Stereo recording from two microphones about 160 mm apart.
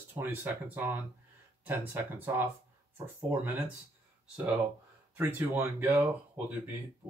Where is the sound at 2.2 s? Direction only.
15° right (ahead or behind).